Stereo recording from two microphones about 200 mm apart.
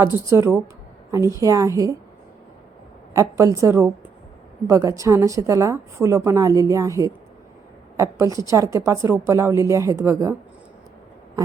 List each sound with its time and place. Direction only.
0.0 s a woman's voice: 15° right (ahead or behind)
3.1 s a woman's voice: 15° right (ahead or behind)